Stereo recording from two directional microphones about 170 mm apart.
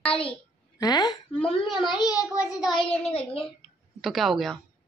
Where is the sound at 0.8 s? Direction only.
25° left (ahead or behind).